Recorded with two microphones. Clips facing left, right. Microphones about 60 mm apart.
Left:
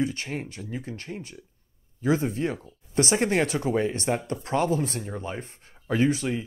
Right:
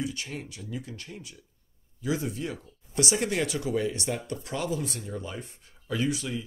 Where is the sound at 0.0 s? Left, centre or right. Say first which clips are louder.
Left 5 dB; left.